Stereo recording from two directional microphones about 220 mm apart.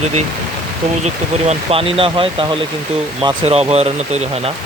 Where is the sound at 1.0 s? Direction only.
30° right (ahead or behind).